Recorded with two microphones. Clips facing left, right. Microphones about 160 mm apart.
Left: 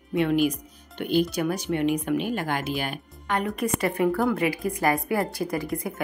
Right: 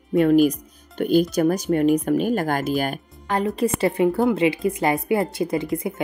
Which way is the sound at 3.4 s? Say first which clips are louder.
Right 7 dB; 25° right (ahead or behind).